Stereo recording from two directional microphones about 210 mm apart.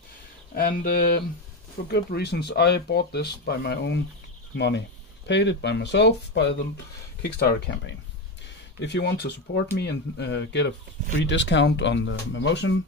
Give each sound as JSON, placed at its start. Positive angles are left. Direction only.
{"t": 0.6, "sound": "speech", "side_deg": 40}